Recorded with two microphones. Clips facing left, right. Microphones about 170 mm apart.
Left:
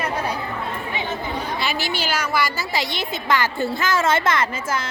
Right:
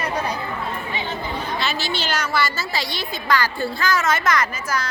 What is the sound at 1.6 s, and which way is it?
A woman's voice, 15° left (ahead or behind).